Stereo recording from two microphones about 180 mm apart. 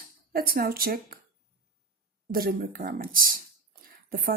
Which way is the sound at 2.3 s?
55° right (ahead or behind).